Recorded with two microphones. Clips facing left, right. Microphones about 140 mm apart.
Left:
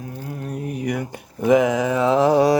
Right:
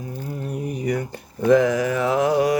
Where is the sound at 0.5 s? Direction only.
Centre (ahead or behind).